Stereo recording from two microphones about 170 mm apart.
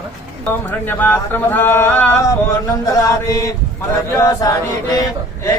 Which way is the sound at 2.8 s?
20° left (ahead or behind).